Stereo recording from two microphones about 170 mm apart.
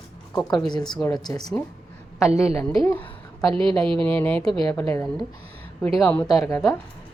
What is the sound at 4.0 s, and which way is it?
Speech, 10° left (ahead or behind).